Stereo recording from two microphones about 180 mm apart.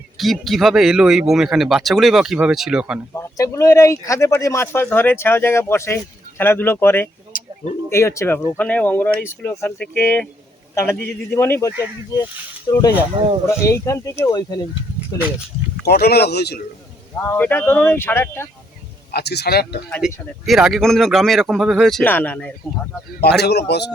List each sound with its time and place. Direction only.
0.2 s speech: centre (ahead or behind)
3.2 s speech: 15° left (ahead or behind)
7.3 s bird: 50° left (ahead or behind)
7.9 s speech: 15° left (ahead or behind)
11.3 s speech: 10° left (ahead or behind)
12.7 s speech: 25° left (ahead or behind)
13.2 s speech: 30° right (ahead or behind)
13.6 s speech: 15° left (ahead or behind)
15.9 s speech: 60° left (ahead or behind)
17.2 s speech: 10° left (ahead or behind)
19.1 s speech: 65° left (ahead or behind)
20.0 s speech: 5° right (ahead or behind)
23.2 s a man's voice: 65° left (ahead or behind)